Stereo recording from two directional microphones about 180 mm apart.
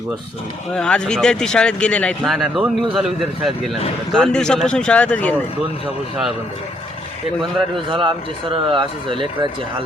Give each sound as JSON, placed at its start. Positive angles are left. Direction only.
{"t": 0.7, "sound": "speech", "side_deg": 5}
{"t": 7.9, "sound": "speech", "side_deg": -30}